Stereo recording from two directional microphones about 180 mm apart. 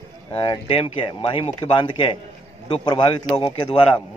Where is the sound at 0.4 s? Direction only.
30° left (ahead or behind).